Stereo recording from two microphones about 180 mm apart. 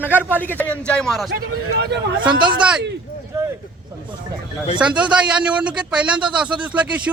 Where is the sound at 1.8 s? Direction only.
65° right (ahead or behind).